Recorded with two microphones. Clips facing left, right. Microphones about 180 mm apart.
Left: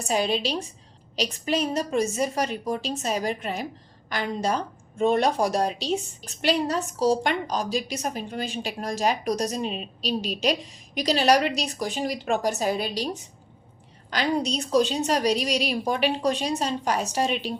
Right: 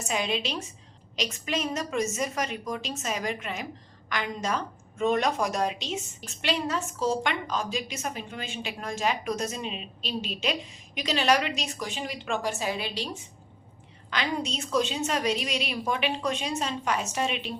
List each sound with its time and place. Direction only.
0.0 s a woman's voice: 35° left (ahead or behind)
14.1 s a woman's voice: 40° left (ahead or behind)